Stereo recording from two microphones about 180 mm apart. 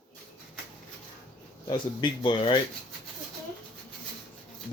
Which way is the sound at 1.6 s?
25° left (ahead or behind).